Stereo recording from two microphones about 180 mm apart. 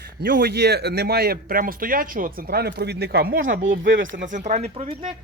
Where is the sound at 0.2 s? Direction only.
60° right (ahead or behind).